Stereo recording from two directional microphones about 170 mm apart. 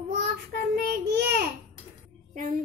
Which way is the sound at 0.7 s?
80° right.